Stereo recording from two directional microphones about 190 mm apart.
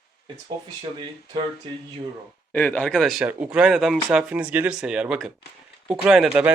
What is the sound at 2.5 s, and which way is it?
Speech, 5° left (ahead or behind).